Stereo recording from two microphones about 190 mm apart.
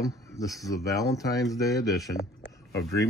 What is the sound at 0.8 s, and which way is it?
Speech, 15° left (ahead or behind).